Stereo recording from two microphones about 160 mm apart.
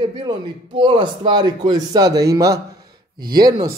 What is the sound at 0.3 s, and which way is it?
Speech, 30° right (ahead or behind).